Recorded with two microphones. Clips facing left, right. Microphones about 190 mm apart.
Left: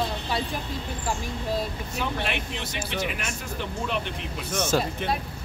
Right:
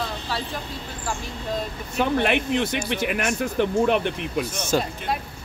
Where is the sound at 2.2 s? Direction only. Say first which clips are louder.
Right 9 dB; 60° right (ahead or behind).